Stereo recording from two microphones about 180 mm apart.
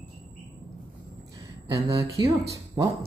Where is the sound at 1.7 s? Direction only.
20° right (ahead or behind).